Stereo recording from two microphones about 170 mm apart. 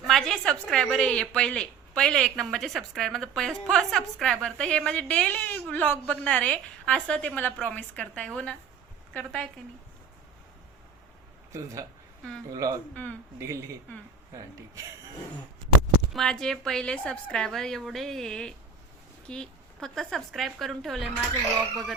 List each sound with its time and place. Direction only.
0.0 s a woman's voice: centre (ahead or behind)
11.5 s speech: 20° right (ahead or behind)
12.9 s a woman's voice: 10° left (ahead or behind)
13.4 s a woman's voice: 15° right (ahead or behind)
16.1 s a woman's voice: 5° left (ahead or behind)